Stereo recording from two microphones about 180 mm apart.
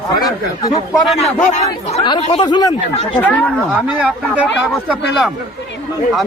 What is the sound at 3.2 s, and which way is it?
Speech, 10° left (ahead or behind).